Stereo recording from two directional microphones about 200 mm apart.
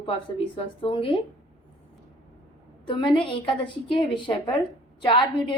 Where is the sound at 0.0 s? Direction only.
25° left (ahead or behind).